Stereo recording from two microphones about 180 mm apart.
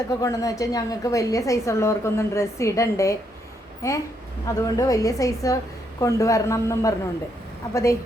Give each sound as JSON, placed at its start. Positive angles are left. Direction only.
{"t": 0.1, "sound": "a woman's voice", "side_deg": 20}